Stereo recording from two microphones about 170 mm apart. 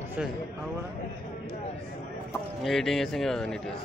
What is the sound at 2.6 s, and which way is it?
Speech, centre (ahead or behind).